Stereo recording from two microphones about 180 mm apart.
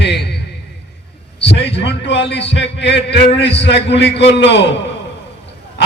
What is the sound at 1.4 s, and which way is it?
A man's voice, 70° left (ahead or behind).